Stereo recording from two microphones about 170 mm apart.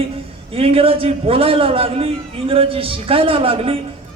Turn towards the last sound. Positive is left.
turn(degrees=-35)  # may be behind; listen again after turning